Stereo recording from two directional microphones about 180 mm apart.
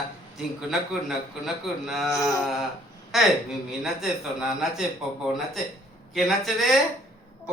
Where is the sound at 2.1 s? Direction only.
20° left (ahead or behind).